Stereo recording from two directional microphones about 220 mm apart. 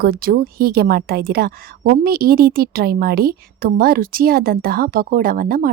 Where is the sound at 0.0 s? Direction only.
40° right (ahead or behind).